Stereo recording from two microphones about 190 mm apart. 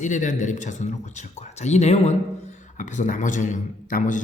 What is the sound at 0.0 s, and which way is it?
A man's voice, 40° left (ahead or behind).